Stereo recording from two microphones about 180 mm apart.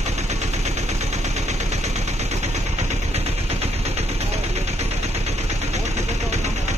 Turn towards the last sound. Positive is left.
turn(degrees=-40)  # may be behind; listen again after turning